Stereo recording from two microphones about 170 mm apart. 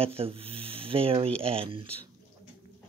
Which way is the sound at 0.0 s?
35° right (ahead or behind).